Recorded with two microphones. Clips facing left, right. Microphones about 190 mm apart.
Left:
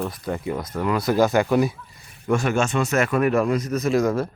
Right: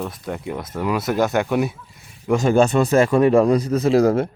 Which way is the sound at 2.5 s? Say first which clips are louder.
Right 6 dB; 35° right (ahead or behind).